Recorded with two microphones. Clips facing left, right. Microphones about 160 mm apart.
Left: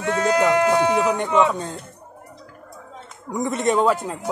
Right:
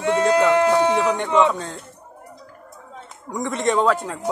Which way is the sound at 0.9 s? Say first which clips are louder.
Even; 5° left (ahead or behind).